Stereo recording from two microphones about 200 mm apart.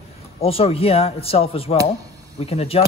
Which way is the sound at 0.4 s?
30° left (ahead or behind).